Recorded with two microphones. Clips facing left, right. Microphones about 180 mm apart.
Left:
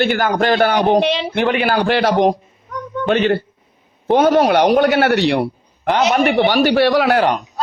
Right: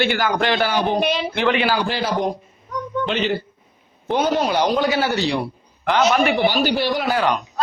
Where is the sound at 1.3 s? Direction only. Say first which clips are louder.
Left 3 dB; 50° left (ahead or behind); by 2.3 s 80° left.